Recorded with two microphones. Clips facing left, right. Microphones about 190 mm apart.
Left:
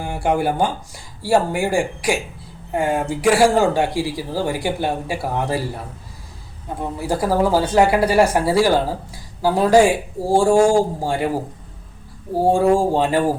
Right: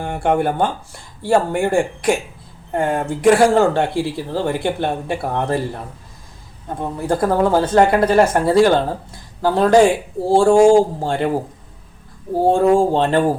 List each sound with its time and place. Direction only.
0.0 s speech: 10° left (ahead or behind)
6.7 s speech: 10° left (ahead or behind)
10.6 s speech: 20° right (ahead or behind)
11.0 s speech: 10° left (ahead or behind)
12.7 s speech: 10° left (ahead or behind)